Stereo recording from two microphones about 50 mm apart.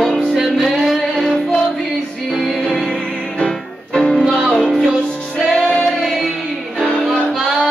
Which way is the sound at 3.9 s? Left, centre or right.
Centre.